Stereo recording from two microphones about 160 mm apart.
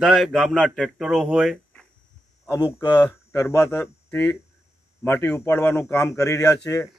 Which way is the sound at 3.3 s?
15° left (ahead or behind).